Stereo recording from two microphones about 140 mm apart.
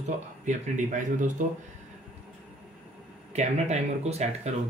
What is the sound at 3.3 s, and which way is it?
Speech, 55° right (ahead or behind).